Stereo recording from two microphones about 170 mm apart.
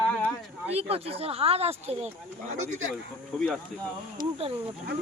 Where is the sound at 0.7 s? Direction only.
35° right (ahead or behind).